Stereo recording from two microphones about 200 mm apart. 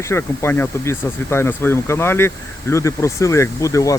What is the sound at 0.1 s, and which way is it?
Speech, 10° left (ahead or behind).